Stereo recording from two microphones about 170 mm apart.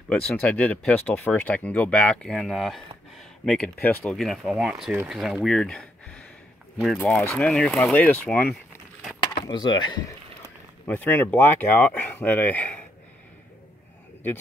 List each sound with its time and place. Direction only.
0.1 s speech: 5° left (ahead or behind)
9.2 s speech: 30° left (ahead or behind)
10.9 s speech: 10° left (ahead or behind)